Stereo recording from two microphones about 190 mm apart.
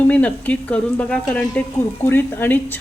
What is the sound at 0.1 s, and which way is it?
A woman's voice, 10° left (ahead or behind).